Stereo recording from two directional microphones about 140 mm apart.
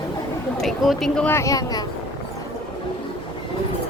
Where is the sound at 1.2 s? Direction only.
20° left (ahead or behind).